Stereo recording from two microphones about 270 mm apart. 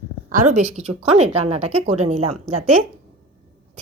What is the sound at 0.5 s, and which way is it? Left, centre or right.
Speech, right.